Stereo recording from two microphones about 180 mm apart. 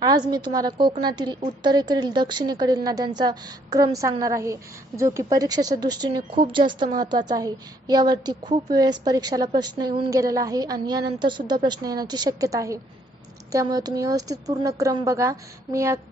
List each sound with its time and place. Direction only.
0.0 s a woman's voice: 25° right (ahead or behind)